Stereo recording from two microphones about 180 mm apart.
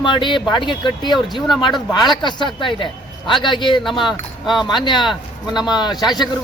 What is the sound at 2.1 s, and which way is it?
A man's voice, 25° left (ahead or behind).